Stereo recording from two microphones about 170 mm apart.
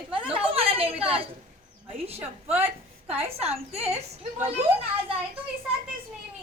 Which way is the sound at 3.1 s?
35° right (ahead or behind).